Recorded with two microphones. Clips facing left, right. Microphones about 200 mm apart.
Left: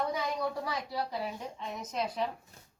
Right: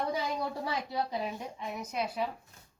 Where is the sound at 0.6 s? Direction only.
25° right (ahead or behind); by 2.3 s 10° right (ahead or behind).